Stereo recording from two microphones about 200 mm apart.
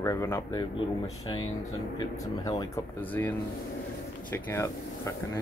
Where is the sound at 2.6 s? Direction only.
10° left (ahead or behind).